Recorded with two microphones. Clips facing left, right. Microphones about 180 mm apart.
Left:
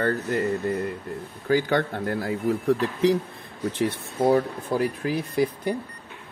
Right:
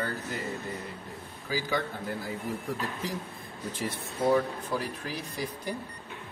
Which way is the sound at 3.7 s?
60° left (ahead or behind).